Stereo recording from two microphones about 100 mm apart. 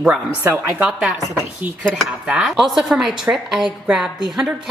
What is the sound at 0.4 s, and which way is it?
Speech, 25° right (ahead or behind).